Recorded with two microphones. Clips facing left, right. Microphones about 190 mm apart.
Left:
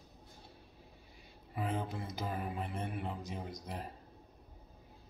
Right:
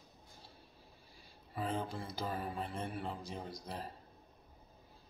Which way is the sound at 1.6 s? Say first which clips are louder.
Left 1 dB; 15° left (ahead or behind).